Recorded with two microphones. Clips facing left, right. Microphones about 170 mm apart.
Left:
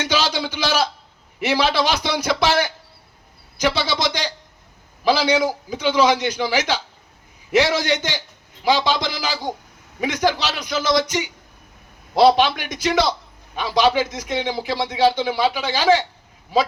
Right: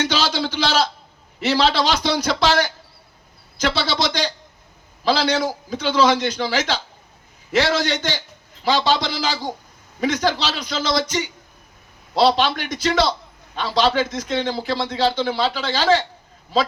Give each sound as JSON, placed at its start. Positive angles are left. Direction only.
{"t": 0.2, "sound": "a sound", "side_deg": 15}
{"t": 1.4, "sound": "a man's voice", "side_deg": 15}
{"t": 3.6, "sound": "a man's voice", "side_deg": 15}
{"t": 12.2, "sound": "a man's voice", "side_deg": 15}